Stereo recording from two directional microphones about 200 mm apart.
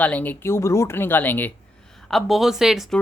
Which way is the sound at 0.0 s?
10° left (ahead or behind).